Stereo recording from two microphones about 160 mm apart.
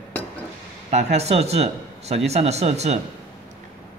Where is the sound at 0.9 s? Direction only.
40° right (ahead or behind).